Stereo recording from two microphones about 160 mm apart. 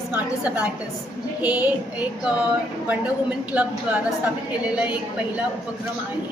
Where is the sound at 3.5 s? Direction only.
10° right (ahead or behind).